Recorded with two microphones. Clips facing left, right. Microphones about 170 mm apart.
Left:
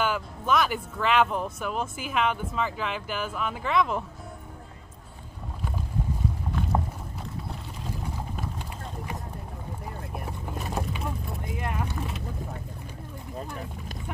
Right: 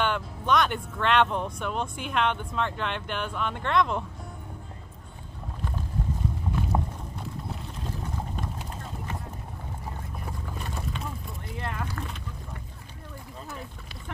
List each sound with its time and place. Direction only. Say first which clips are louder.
0.0 s speech: even; 5° left (ahead or behind)
6.7 s a sound: left 2 dB; 5° right (ahead or behind)
10.6 s vehicle: left 5 dB; 5° left (ahead or behind)
11.5 s vehicle: left 1 dB; 15° left (ahead or behind)